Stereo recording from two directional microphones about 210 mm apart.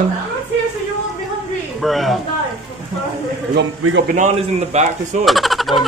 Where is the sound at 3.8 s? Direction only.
65° right (ahead or behind).